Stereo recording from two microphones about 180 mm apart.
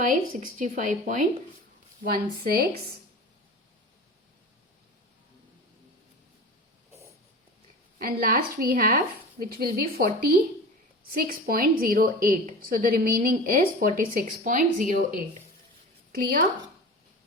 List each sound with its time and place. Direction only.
0.1 s a woman's voice: 45° right (ahead or behind)
2.0 s a woman's voice: 55° right (ahead or behind)
7.9 s a woman's voice: 55° right (ahead or behind)
16.1 s a woman's voice: 55° right (ahead or behind)